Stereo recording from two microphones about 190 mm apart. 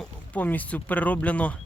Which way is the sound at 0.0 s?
10° left (ahead or behind).